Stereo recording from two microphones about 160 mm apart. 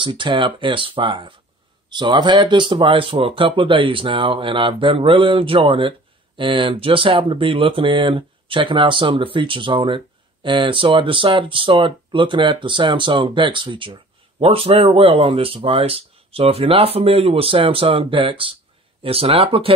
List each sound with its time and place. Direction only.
0.0 s speech: 30° right (ahead or behind)